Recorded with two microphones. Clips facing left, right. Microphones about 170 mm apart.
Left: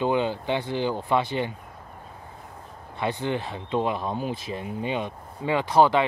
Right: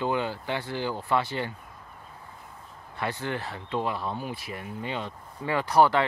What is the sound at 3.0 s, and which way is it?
Speech, 20° left (ahead or behind).